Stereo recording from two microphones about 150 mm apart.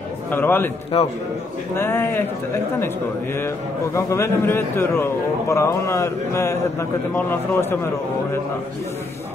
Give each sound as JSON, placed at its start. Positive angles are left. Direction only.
{"t": 0.3, "sound": "a man's voice", "side_deg": 15}
{"t": 0.9, "sound": "a man's voice", "side_deg": 40}
{"t": 1.8, "sound": "a man's voice", "side_deg": 15}
{"t": 3.3, "sound": "a man's voice", "side_deg": 20}